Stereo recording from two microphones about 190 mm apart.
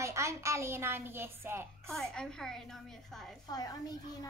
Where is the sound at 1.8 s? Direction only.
5° left (ahead or behind).